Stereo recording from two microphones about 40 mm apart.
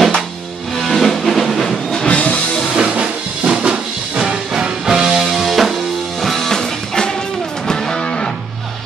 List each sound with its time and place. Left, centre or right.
0.7 s music: centre
2.0 s music: left
2.8 s music: right
4.2 s music: centre
6.2 s music: centre